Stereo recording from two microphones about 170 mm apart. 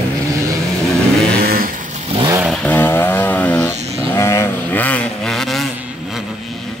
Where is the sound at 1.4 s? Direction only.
60° right (ahead or behind).